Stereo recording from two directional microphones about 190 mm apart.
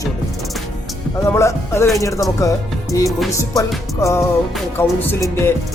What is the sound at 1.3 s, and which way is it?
Speech, 15° left (ahead or behind).